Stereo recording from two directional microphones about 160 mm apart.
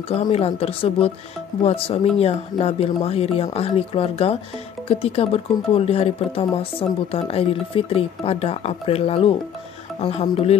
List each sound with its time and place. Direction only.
0.1 s speech: 40° left (ahead or behind)